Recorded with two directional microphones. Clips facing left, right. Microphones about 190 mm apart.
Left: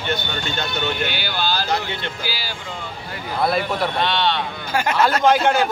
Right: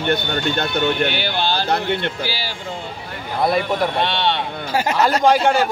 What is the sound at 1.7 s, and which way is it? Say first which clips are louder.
Speech: right 4 dB; 60° right (ahead or behind).